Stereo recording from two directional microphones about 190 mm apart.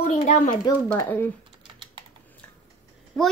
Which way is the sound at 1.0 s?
10° left (ahead or behind).